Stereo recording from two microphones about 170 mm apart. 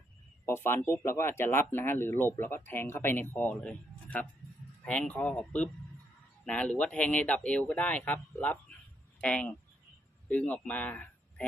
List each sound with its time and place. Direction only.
0.4 s speech: 15° left (ahead or behind)